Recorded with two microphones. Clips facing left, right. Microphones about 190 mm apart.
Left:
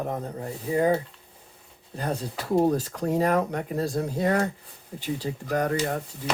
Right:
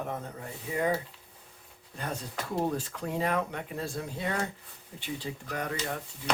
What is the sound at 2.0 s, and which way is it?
Speech, 35° left (ahead or behind).